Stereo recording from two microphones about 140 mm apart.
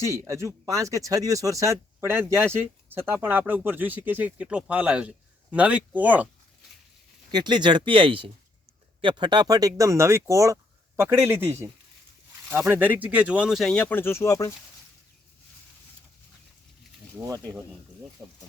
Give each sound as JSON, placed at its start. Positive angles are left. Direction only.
{"t": 0.0, "sound": "speech", "side_deg": -20}
{"t": 7.3, "sound": "speech", "side_deg": -30}
{"t": 17.2, "sound": "speech", "side_deg": -20}